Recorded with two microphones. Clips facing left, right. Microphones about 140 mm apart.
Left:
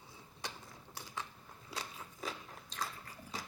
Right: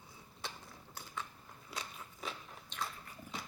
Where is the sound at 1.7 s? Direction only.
35° left (ahead or behind).